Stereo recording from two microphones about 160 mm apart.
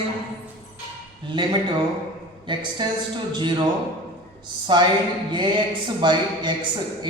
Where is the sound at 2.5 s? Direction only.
30° right (ahead or behind).